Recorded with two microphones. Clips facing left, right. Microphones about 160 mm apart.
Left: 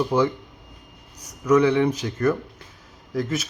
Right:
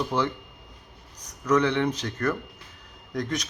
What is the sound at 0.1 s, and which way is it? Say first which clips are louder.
Speech: left 6 dB; 10° left (ahead or behind).